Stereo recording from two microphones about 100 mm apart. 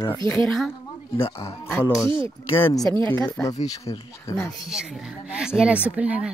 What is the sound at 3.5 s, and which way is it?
Speech, 35° left (ahead or behind).